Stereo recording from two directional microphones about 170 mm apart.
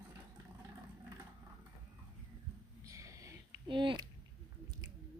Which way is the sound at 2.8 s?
20° right (ahead or behind).